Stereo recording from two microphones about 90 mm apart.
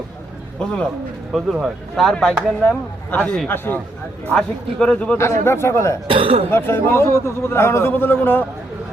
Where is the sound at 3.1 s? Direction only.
15° left (ahead or behind).